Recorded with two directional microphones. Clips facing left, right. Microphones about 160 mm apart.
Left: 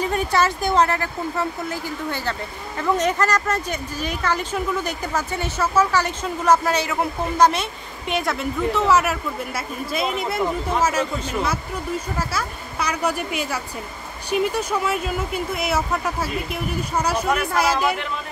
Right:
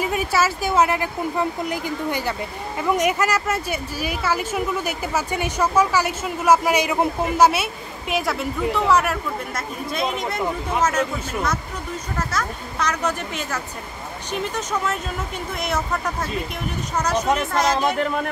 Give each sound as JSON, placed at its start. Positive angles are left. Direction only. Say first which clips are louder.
{"t": 0.0, "sound": "a woman's voice", "louder": "left 1 dB", "side_deg": -5}
{"t": 17.9, "sound": "speech", "louder": "right 6 dB", "side_deg": -40}